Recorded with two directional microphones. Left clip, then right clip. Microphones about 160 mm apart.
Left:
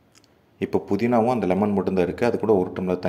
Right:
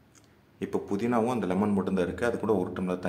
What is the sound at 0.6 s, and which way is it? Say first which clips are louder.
Speech: left 7 dB; 25° left (ahead or behind).